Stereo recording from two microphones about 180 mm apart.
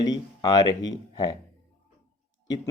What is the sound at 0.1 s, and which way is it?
Speech, 25° left (ahead or behind).